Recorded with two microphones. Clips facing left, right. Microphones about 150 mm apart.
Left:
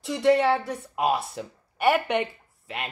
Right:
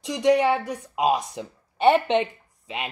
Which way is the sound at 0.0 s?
15° right (ahead or behind).